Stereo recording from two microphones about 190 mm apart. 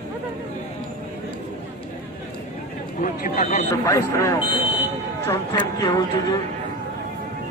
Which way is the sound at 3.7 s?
15° left (ahead or behind).